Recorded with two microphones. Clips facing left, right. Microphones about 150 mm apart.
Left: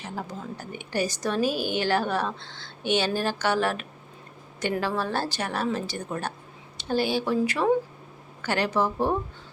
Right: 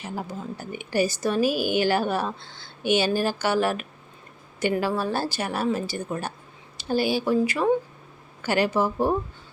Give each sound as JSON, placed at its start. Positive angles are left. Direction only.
{"t": 0.0, "sound": "speech", "side_deg": -5}